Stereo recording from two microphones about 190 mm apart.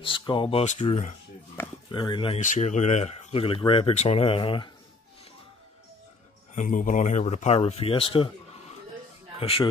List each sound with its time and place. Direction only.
0.0 s speech: 25° left (ahead or behind)
2.4 s speech: 40° left (ahead or behind)
6.5 s speech: 45° left (ahead or behind)
9.4 s speech: 30° left (ahead or behind)